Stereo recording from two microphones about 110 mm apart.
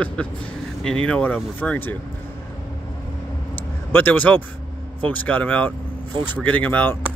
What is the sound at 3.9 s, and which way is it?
Speech, 15° left (ahead or behind).